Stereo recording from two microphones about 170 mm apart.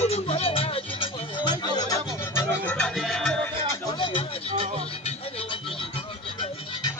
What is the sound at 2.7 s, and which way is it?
Music, centre (ahead or behind).